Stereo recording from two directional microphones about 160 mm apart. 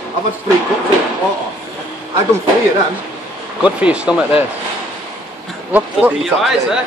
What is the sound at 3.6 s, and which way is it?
Speech, 5° right (ahead or behind).